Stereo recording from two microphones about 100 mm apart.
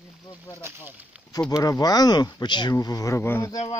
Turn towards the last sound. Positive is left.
turn(degrees=30)  # may be behind; listen again after turning